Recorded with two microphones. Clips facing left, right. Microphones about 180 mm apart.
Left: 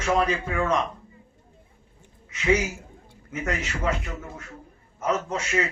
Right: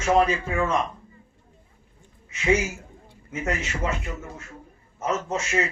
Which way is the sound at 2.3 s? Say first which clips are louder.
Even; 25° right (ahead or behind).